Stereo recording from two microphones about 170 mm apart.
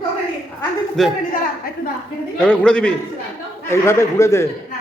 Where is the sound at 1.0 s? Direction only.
Centre (ahead or behind).